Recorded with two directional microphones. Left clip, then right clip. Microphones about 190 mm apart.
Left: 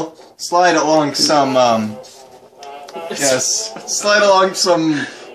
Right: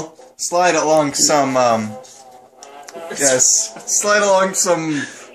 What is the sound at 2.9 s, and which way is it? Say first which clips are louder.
Speech: even; 30° right (ahead or behind).